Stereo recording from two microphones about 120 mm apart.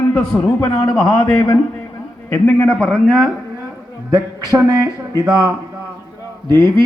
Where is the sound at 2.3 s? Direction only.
15° left (ahead or behind).